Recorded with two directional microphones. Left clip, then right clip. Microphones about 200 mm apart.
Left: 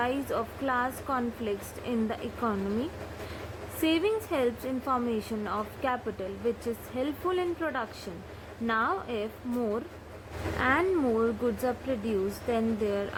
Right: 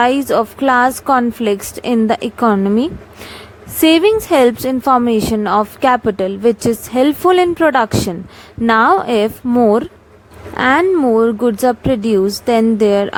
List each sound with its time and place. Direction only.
0.0 s a woman's voice: 50° right (ahead or behind)
3.8 s a woman's voice: 55° right (ahead or behind)
10.9 s a woman's voice: 40° right (ahead or behind)